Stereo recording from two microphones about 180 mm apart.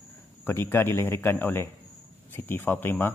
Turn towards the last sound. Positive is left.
turn(degrees=10)  # may be behind; listen again after turning